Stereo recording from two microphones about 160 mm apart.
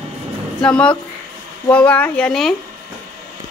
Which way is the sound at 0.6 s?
5° left (ahead or behind).